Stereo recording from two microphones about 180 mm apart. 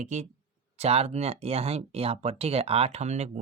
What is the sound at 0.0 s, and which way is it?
Speech, 40° right (ahead or behind).